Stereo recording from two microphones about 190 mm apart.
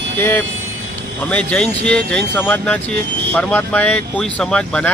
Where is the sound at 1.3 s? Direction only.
5° left (ahead or behind).